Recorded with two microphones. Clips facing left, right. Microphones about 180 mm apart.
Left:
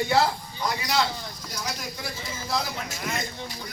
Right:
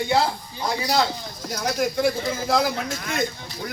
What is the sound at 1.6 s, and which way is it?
Speech, 55° right (ahead or behind).